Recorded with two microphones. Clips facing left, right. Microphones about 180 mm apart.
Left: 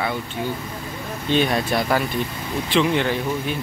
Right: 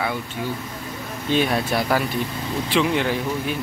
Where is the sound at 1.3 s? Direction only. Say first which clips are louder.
Left 1 dB; 5° right (ahead or behind).